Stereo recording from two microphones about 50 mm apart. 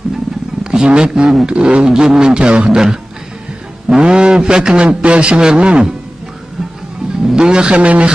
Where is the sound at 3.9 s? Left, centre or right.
Centre.